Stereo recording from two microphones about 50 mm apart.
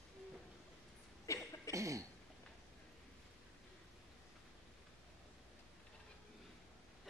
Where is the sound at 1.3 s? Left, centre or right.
Left.